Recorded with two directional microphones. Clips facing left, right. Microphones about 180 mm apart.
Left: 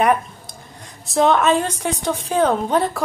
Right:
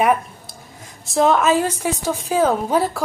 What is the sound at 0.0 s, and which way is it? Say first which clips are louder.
A woman's voice: even; 5° right (ahead or behind).